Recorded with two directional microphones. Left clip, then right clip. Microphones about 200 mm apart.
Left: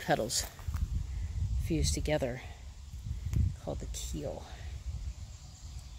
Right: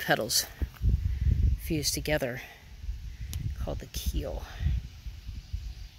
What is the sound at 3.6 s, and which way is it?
Speech, 5° right (ahead or behind).